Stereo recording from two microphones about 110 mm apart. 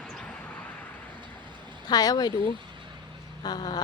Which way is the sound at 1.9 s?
35° left (ahead or behind).